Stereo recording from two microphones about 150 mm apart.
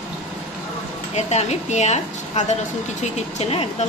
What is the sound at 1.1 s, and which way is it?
Speech, 45° left (ahead or behind).